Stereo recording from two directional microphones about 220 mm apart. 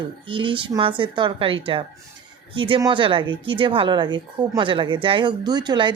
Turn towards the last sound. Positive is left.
turn(degrees=-20)  # may be behind; listen again after turning